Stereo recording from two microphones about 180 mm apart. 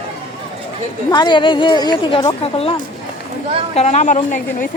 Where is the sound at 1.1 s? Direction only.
25° left (ahead or behind).